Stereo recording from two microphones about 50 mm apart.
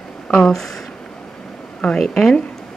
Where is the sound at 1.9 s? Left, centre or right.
Centre.